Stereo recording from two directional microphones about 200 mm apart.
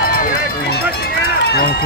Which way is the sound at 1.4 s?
50° left (ahead or behind).